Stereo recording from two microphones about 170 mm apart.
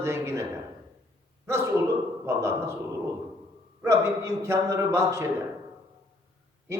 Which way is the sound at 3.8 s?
15° right (ahead or behind).